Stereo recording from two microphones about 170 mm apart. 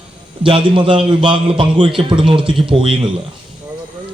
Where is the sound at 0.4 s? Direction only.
30° right (ahead or behind).